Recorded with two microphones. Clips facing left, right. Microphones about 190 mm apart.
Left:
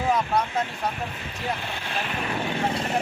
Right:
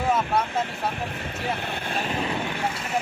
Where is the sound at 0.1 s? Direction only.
5° right (ahead or behind).